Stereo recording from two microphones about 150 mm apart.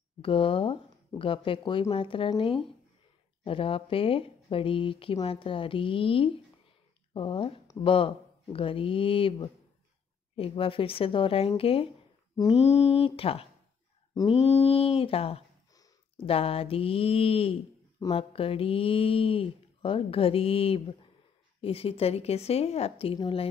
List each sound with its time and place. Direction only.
0.2 s speech: 35° left (ahead or behind)